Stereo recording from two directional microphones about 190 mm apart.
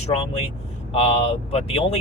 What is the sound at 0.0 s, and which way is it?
Speech, 30° left (ahead or behind).